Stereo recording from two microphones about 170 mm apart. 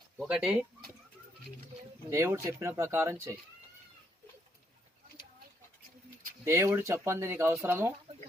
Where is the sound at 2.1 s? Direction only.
15° right (ahead or behind).